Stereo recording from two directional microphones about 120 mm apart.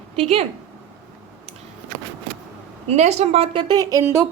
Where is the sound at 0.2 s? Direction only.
55° right (ahead or behind).